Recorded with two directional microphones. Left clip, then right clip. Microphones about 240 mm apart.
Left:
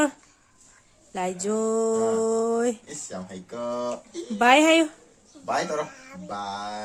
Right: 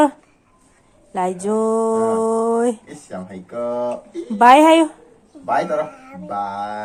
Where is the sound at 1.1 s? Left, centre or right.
Centre.